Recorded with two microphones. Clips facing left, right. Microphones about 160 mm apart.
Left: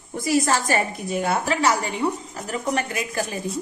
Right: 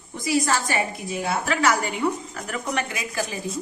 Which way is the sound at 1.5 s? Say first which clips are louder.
Left 1 dB; 25° left (ahead or behind).